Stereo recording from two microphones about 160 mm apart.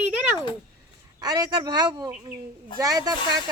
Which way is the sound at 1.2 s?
25° right (ahead or behind).